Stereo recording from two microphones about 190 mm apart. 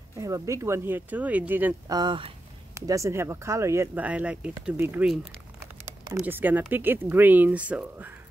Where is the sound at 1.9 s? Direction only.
25° right (ahead or behind).